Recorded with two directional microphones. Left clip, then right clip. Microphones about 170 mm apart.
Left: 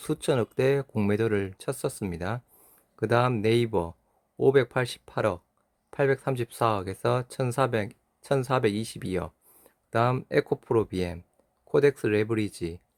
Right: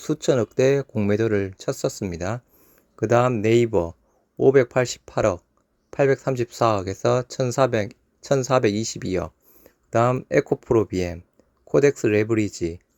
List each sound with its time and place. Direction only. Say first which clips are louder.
0.0 s speech: right 5 dB; 10° right (ahead or behind)